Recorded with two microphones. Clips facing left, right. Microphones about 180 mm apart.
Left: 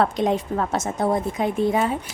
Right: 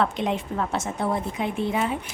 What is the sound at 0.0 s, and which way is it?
A woman's voice, 40° left (ahead or behind).